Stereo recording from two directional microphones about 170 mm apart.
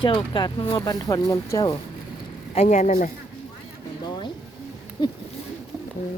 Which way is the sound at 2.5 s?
40° left (ahead or behind).